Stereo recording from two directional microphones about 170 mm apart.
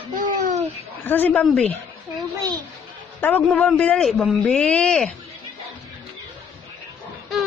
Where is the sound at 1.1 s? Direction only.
10° left (ahead or behind).